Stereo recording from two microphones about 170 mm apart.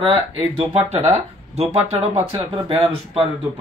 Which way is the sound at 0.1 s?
35° right (ahead or behind).